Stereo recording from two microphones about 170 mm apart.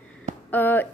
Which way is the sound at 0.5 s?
10° left (ahead or behind).